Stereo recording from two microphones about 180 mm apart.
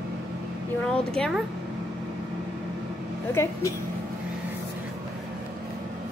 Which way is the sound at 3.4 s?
15° left (ahead or behind).